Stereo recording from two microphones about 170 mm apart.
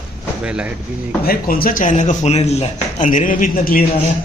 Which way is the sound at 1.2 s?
60° left (ahead or behind).